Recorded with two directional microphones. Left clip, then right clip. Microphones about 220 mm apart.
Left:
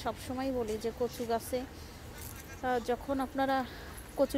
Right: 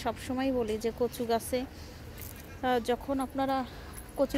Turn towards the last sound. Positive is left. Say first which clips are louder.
# even
turn(degrees=5)  # may be behind; listen again after turning